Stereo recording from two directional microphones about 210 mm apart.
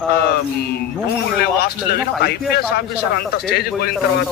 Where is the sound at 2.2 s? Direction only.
50° left (ahead or behind).